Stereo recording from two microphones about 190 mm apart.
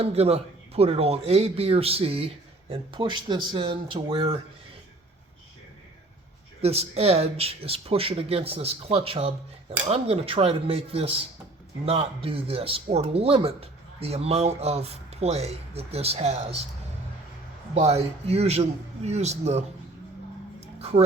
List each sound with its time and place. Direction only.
0.0 s speech: 30° right (ahead or behind)
6.6 s speech: 35° right (ahead or behind)
17.7 s speech: 35° right (ahead or behind)